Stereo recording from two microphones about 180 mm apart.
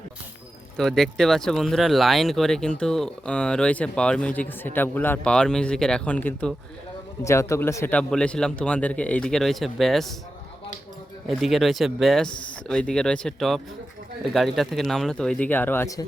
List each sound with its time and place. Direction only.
0.8 s speech: centre (ahead or behind)
11.3 s speech: centre (ahead or behind); by 16.0 s 15° left (ahead or behind)